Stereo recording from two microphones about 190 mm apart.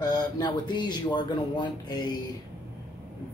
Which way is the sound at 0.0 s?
20° left (ahead or behind).